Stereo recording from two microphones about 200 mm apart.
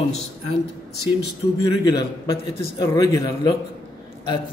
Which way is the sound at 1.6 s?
20° left (ahead or behind).